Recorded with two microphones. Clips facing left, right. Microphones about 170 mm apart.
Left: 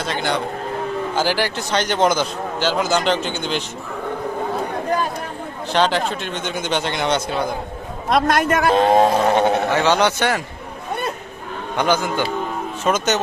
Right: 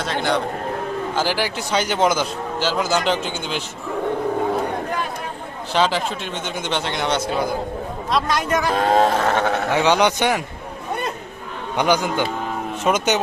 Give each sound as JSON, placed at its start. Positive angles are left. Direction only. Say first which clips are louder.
{"t": 0.0, "sound": "speech", "louder": "right 1 dB", "side_deg": 0}
{"t": 5.7, "sound": "speech", "louder": "left 1 dB", "side_deg": 0}
{"t": 8.1, "sound": "a man's voice", "louder": "left 4 dB", "side_deg": 55}
{"t": 8.7, "sound": "a sound", "louder": "left 3 dB", "side_deg": 20}
{"t": 9.7, "sound": "a man's voice", "louder": "even", "side_deg": -15}
{"t": 11.8, "sound": "a man's voice", "louder": "even", "side_deg": -15}